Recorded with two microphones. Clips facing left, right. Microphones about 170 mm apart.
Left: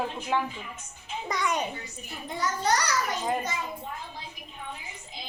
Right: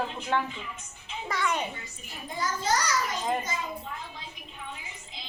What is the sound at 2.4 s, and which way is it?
Speech, 65° left (ahead or behind).